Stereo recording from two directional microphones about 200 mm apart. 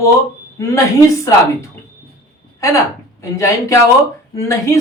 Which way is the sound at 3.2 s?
15° left (ahead or behind).